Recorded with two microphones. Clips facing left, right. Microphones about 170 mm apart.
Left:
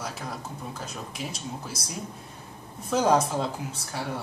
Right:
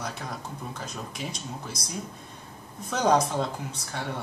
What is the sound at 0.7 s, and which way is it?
Speech, 5° left (ahead or behind).